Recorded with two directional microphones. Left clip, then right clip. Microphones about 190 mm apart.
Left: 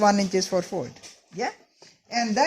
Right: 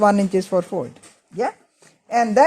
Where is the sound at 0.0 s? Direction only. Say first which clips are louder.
Right 4 dB; 20° right (ahead or behind).